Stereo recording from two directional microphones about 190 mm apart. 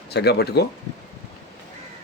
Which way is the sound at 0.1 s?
60° left (ahead or behind).